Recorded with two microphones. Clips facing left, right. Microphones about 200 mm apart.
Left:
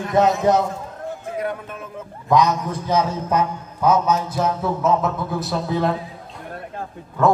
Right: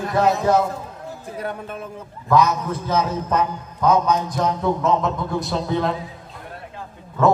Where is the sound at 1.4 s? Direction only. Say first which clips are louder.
Even; 35° right (ahead or behind).